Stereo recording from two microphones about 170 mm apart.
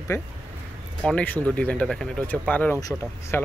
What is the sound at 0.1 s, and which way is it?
Speech, 15° left (ahead or behind).